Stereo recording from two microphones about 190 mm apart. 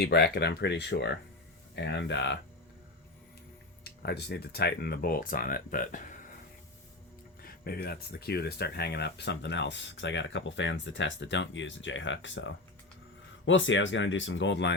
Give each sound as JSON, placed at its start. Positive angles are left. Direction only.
{"t": 0.0, "sound": "speech", "side_deg": 55}
{"t": 3.8, "sound": "speech", "side_deg": 60}
{"t": 7.4, "sound": "speech", "side_deg": 55}